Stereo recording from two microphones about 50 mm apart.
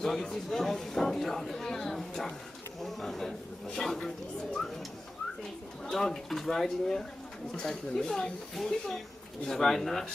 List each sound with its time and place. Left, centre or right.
0.0 s speech: centre
5.9 s speech: centre